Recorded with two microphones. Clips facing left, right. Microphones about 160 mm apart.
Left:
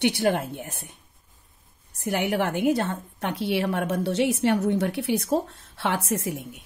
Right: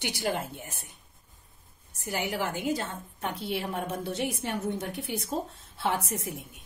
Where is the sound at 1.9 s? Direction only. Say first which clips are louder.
Left 7 dB; 65° left (ahead or behind).